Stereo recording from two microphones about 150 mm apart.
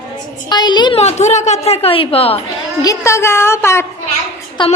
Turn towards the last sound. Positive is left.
turn(degrees=30)  # may be behind; listen again after turning